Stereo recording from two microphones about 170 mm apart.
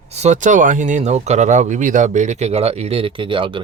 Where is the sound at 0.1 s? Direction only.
40° right (ahead or behind).